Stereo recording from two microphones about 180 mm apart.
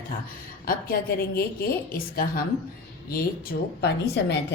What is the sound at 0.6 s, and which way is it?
A woman's voice, 55° left (ahead or behind).